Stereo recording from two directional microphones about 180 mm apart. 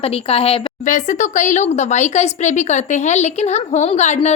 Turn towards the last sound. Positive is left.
turn(degrees=40)  # may be behind; listen again after turning